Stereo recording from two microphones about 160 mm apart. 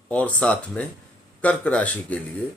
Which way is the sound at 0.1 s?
10° left (ahead or behind).